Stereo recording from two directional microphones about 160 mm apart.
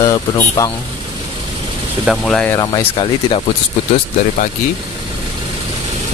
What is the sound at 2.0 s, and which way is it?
Speech, 5° left (ahead or behind).